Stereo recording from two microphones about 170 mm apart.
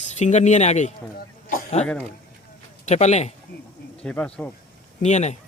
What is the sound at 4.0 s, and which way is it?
Speech, 5° left (ahead or behind).